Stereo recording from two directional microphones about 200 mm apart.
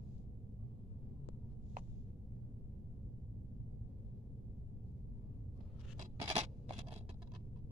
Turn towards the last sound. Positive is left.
turn(degrees=-25)  # may be behind; listen again after turning